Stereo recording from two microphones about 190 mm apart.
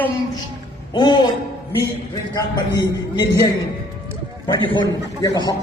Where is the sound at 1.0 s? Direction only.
25° left (ahead or behind).